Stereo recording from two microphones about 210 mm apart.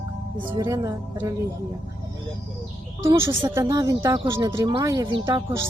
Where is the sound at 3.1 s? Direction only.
10° right (ahead or behind).